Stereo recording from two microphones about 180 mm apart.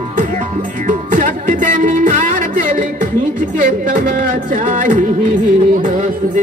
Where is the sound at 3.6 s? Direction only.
45° right (ahead or behind).